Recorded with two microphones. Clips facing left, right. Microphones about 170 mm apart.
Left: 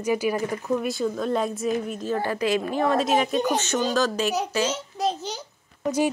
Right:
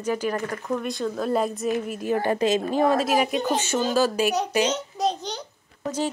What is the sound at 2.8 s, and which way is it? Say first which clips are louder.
Speech: left 1 dB; 5° right (ahead or behind).